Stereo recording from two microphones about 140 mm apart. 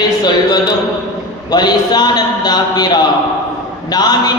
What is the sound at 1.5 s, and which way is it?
A man's voice, 30° left (ahead or behind).